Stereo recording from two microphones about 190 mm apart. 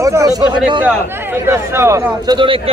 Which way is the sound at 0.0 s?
15° right (ahead or behind).